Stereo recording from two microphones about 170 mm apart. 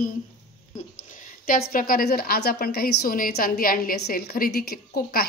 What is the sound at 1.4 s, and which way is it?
A woman's voice, 60° left (ahead or behind).